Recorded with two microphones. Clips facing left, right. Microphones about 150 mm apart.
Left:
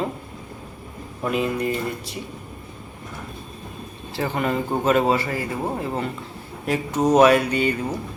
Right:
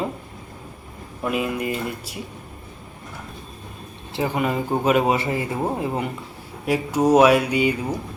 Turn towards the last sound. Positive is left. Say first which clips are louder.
# right 1 dB
turn(degrees=-10)  # may be behind; listen again after turning